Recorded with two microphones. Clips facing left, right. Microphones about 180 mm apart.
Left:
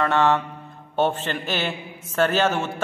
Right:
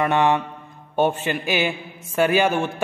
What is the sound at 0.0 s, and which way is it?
A man's voice, 15° right (ahead or behind).